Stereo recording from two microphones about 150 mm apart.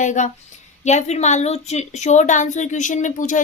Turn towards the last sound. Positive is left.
turn(degrees=55)  # may be behind; listen again after turning